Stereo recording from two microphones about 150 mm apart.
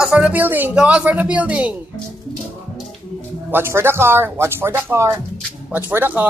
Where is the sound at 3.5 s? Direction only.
15° right (ahead or behind).